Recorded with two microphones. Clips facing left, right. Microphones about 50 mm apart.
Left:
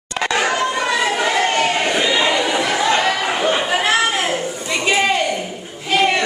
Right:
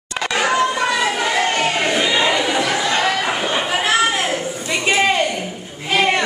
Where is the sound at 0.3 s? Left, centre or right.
Centre.